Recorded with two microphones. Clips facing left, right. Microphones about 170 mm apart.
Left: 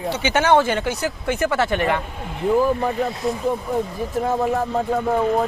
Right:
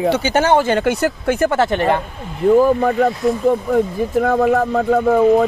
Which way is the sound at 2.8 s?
65° right (ahead or behind).